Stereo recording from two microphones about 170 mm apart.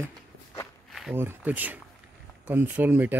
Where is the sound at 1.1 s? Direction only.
15° right (ahead or behind).